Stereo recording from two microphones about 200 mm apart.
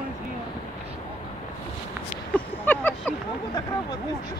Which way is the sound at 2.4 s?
10° left (ahead or behind).